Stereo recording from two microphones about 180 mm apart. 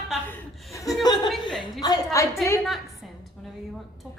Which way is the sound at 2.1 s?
15° left (ahead or behind).